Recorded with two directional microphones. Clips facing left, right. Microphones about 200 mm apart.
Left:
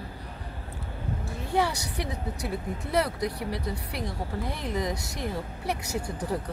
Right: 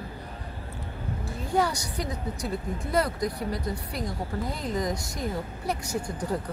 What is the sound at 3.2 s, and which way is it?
Speech, 65° left (ahead or behind).